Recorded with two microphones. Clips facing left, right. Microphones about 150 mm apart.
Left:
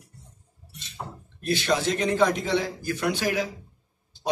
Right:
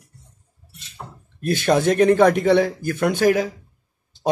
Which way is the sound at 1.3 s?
50° right (ahead or behind).